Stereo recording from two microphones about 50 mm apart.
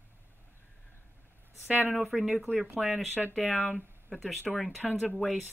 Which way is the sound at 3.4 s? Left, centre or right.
Left.